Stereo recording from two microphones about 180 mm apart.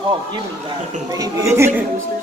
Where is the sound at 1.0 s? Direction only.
20° right (ahead or behind).